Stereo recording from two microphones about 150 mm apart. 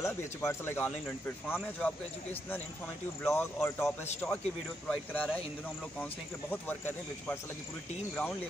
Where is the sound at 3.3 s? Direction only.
15° left (ahead or behind).